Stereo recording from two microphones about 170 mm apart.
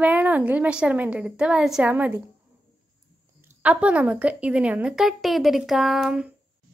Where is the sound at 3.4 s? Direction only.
10° right (ahead or behind).